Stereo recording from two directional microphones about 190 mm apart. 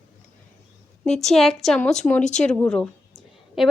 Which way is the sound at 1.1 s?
Centre (ahead or behind).